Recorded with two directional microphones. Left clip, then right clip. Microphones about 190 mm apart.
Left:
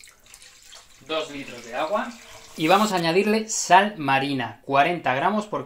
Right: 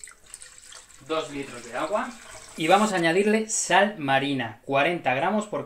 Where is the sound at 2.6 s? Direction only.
25° left (ahead or behind).